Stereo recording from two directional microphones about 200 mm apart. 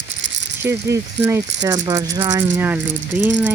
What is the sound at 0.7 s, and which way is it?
Speech, 15° right (ahead or behind).